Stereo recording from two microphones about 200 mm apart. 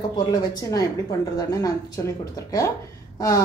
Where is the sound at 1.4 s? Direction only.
15° left (ahead or behind).